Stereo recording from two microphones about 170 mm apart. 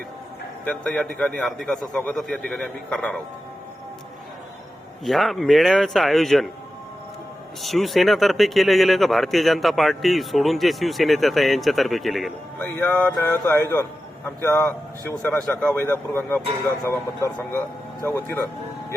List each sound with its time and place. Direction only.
0.6 s speech: 5° left (ahead or behind)
5.0 s speech: centre (ahead or behind)
7.6 s speech: centre (ahead or behind)